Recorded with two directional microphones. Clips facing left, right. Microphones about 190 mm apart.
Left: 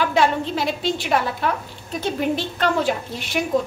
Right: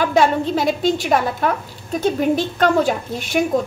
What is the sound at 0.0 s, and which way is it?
A woman's voice, 45° right (ahead or behind).